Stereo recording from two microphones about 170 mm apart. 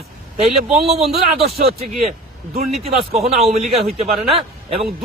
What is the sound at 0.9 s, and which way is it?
Speech, 35° right (ahead or behind).